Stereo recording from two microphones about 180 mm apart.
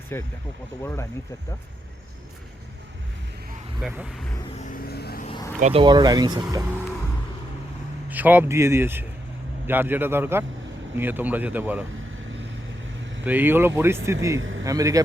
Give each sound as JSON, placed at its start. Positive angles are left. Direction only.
{"t": 0.1, "sound": "speech", "side_deg": 15}
{"t": 3.8, "sound": "speech", "side_deg": -5}
{"t": 4.6, "sound": "vehicle", "side_deg": 55}
{"t": 5.5, "sound": "speech", "side_deg": -40}
{"t": 5.8, "sound": "speech", "side_deg": -25}
{"t": 8.1, "sound": "speech", "side_deg": -10}
{"t": 13.2, "sound": "speech", "side_deg": -10}
{"t": 14.3, "sound": "a man's voice", "side_deg": -90}
{"t": 14.6, "sound": "speech", "side_deg": -20}